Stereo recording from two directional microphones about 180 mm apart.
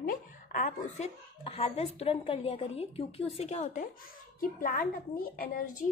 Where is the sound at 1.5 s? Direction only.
35° left (ahead or behind); by 5.6 s 50° left (ahead or behind).